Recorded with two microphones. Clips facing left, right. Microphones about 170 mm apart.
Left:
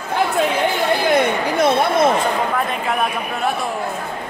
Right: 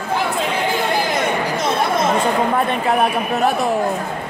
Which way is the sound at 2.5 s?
40° right (ahead or behind).